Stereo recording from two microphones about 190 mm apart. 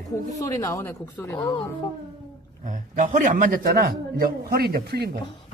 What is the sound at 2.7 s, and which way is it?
A man's voice, 40° right (ahead or behind).